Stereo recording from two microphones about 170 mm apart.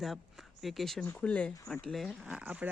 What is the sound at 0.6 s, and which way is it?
Speech, centre (ahead or behind).